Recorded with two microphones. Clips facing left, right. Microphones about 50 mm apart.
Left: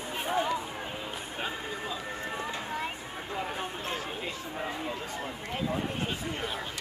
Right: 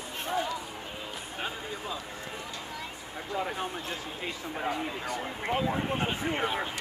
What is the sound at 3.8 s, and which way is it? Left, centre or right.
Speech, left.